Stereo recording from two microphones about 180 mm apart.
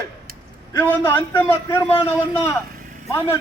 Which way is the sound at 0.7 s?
10° left (ahead or behind).